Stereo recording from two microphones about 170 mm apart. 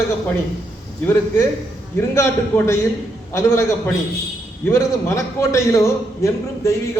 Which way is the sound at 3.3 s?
15° left (ahead or behind).